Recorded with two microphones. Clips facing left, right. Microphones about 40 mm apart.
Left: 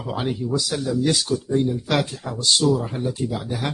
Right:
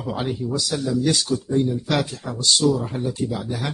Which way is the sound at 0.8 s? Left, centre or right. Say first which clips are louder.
Right 2 dB; centre.